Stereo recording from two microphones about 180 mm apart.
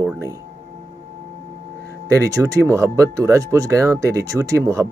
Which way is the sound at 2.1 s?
15° right (ahead or behind).